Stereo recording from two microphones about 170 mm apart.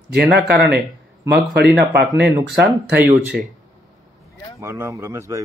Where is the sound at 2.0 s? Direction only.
75° right (ahead or behind).